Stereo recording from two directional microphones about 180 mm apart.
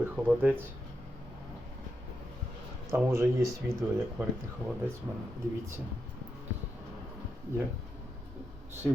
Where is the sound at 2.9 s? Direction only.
15° right (ahead or behind).